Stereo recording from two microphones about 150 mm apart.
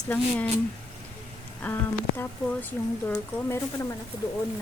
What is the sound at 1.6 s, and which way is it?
A woman's voice, 10° left (ahead or behind).